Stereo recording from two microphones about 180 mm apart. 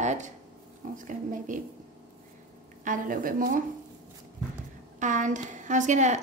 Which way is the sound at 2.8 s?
50° right (ahead or behind).